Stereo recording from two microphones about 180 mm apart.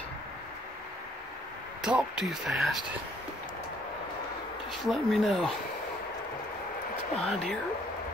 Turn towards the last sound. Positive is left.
turn(degrees=0)  # may be behind; listen again after turning